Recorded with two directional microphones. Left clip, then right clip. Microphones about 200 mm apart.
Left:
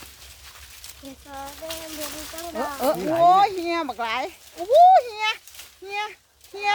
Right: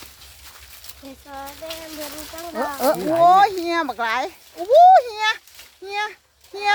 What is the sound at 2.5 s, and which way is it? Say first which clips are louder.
Speech: right 3 dB; 50° right (ahead or behind).